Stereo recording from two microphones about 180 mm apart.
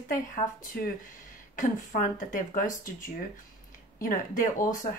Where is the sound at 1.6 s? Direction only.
45° left (ahead or behind).